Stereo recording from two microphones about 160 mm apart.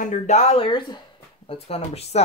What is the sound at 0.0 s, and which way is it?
Speech, 50° left (ahead or behind).